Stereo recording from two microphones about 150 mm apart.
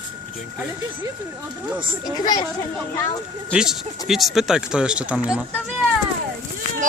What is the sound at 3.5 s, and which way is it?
Speech, 5° right (ahead or behind).